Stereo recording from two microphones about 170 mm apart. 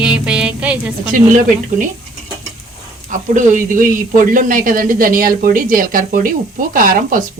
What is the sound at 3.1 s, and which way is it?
Speech, 50° right (ahead or behind).